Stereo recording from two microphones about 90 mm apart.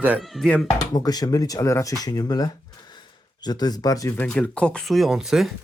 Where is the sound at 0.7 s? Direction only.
45° left (ahead or behind).